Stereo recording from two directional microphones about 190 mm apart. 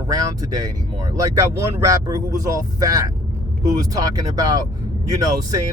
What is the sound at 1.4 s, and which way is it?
Speech, 15° right (ahead or behind).